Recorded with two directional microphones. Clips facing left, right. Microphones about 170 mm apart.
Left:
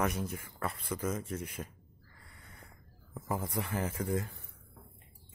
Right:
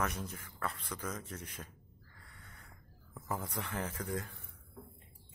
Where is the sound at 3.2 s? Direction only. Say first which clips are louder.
Left 4 dB; 10° left (ahead or behind).